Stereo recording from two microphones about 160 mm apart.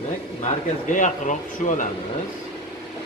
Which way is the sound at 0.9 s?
50° left (ahead or behind).